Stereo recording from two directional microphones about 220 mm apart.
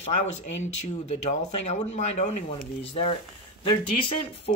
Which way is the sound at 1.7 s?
30° left (ahead or behind).